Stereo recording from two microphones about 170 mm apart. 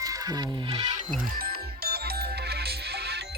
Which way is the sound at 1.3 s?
60° right (ahead or behind).